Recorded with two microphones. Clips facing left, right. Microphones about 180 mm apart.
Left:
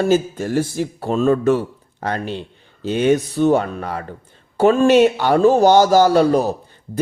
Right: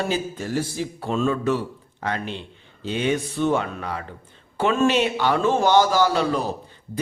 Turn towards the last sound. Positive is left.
turn(degrees=45)  # may be behind; listen again after turning